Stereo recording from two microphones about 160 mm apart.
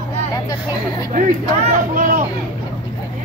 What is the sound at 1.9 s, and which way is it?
Speech, 60° right (ahead or behind).